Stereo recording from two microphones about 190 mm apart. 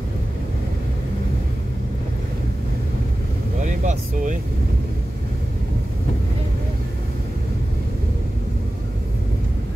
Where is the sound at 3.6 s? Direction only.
40° right (ahead or behind).